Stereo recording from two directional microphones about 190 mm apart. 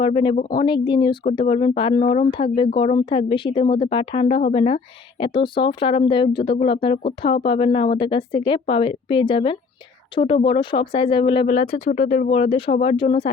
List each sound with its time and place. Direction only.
0.0 s speech: 25° left (ahead or behind)
11.9 s speech: 40° left (ahead or behind)